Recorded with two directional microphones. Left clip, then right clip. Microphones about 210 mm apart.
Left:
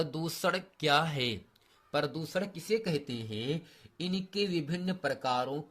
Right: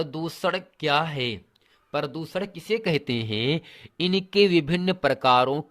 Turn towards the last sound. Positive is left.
turn(degrees=-45)  # may be behind; listen again after turning